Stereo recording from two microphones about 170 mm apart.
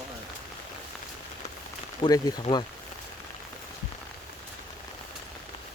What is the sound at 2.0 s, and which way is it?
Speech, 25° left (ahead or behind).